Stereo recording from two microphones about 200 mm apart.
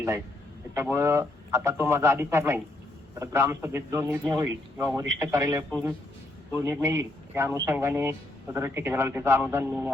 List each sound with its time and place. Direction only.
0.7 s speech: 15° right (ahead or behind)